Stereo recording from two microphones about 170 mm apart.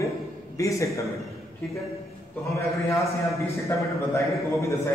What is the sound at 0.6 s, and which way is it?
Speech, 20° left (ahead or behind).